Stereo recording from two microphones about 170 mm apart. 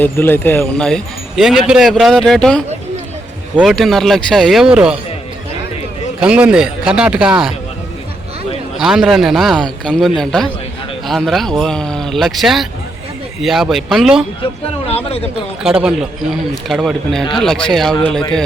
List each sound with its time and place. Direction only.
0.0 s speech: 10° left (ahead or behind); by 4.9 s 5° right (ahead or behind)
6.1 s speech: 5° right (ahead or behind)
8.8 s speech: centre (ahead or behind)
14.4 s speech: 35° left (ahead or behind)
15.6 s speech: 5° right (ahead or behind)